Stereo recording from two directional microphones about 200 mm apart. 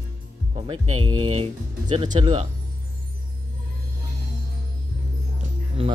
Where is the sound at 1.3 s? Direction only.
30° right (ahead or behind).